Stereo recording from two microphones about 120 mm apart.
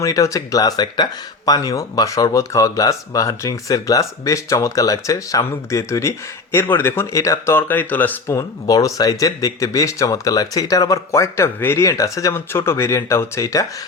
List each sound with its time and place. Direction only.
0.0 s speech: 25° left (ahead or behind)
8.4 s speech: 30° left (ahead or behind)